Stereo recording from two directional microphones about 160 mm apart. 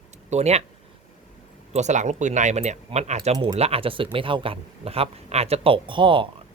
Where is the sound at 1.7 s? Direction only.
45° right (ahead or behind).